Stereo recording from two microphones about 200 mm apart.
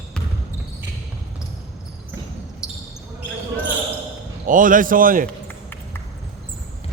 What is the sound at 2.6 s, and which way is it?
Basketball bounce, 5° right (ahead or behind).